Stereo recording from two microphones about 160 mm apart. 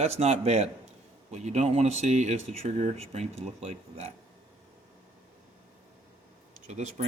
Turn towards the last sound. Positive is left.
turn(degrees=-45)  # may be behind; listen again after turning